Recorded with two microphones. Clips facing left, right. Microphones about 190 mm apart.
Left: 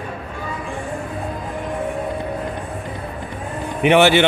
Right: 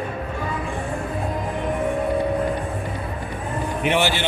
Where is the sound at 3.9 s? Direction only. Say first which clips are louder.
Left 9 dB; 65° left (ahead or behind).